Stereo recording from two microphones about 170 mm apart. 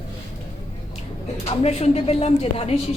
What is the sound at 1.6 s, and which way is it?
A woman's voice, 40° left (ahead or behind).